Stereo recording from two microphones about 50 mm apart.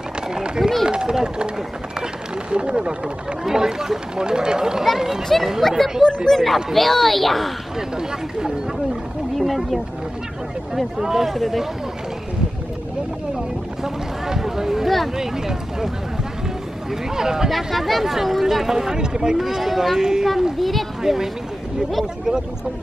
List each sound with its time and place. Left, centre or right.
0.3 s run: centre
0.8 s speech: centre
2.5 s speech: centre
9.4 s speech: centre
14.2 s speech: centre
17.1 s speech: centre
17.5 s speech: centre